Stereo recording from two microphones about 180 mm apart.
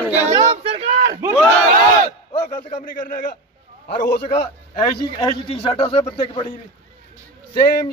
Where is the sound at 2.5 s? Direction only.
45° left (ahead or behind).